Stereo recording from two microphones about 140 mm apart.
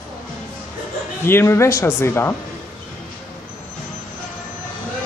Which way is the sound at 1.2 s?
15° left (ahead or behind).